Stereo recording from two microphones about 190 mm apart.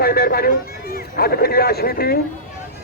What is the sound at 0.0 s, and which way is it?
Speech, 55° left (ahead or behind).